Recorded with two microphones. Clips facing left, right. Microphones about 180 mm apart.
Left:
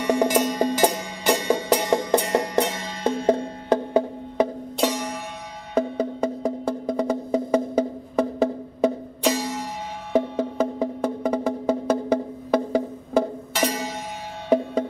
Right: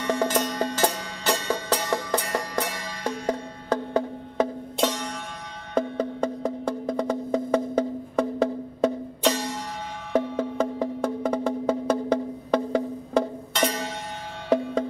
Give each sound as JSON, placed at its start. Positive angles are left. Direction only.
{"t": 0.0, "sound": "music", "side_deg": 15}
{"t": 5.8, "sound": "wood block", "side_deg": 10}
{"t": 10.1, "sound": "music", "side_deg": 10}